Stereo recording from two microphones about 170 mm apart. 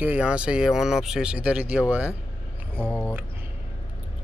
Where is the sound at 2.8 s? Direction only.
5° left (ahead or behind).